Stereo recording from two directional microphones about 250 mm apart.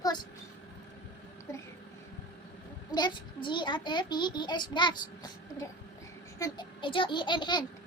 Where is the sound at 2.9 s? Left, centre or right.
Centre.